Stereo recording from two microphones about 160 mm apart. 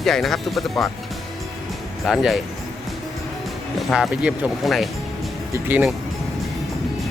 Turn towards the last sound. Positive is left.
turn(degrees=-10)  # may be behind; listen again after turning